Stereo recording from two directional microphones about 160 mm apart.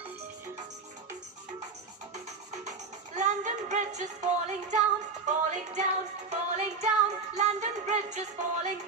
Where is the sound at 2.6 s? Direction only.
50° right (ahead or behind).